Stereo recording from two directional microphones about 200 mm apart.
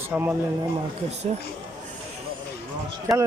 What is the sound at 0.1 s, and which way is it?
Speech, 10° right (ahead or behind).